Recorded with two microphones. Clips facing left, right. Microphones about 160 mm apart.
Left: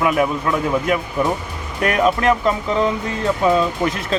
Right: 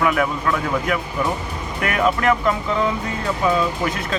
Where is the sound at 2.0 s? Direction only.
25° left (ahead or behind).